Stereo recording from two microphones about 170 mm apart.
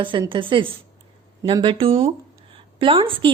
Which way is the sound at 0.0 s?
30° right (ahead or behind).